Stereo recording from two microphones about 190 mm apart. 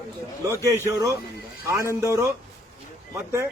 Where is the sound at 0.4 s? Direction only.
15° right (ahead or behind).